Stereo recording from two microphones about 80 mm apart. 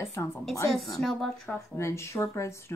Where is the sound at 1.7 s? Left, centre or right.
Left.